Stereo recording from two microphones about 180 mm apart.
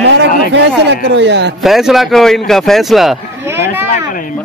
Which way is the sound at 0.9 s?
75° right (ahead or behind).